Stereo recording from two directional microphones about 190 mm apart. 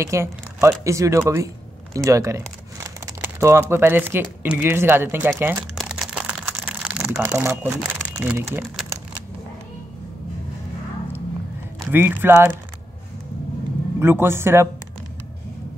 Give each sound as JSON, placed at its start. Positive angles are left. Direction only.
{"t": 0.0, "sound": "speech", "side_deg": -15}
{"t": 5.4, "sound": "crumpling", "side_deg": -5}
{"t": 11.9, "sound": "speech", "side_deg": -10}
{"t": 13.9, "sound": "speech", "side_deg": -15}